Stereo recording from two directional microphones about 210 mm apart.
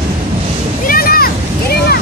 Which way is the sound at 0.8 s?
45° left (ahead or behind).